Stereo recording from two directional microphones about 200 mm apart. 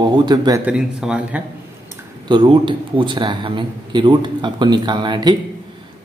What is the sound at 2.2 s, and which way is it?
Speech, 25° right (ahead or behind).